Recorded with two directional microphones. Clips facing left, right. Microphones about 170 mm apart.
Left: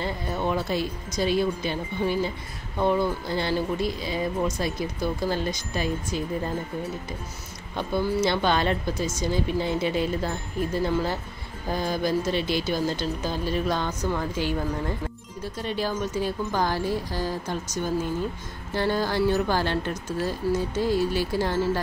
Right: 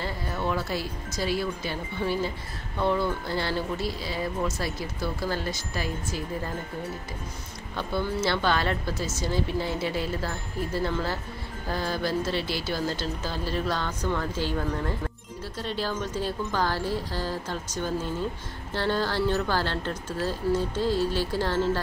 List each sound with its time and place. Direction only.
0.0 s speech: 20° left (ahead or behind)
7.7 s speech: 10° left (ahead or behind)